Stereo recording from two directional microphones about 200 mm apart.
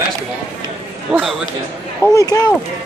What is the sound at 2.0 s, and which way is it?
Speech, 15° left (ahead or behind).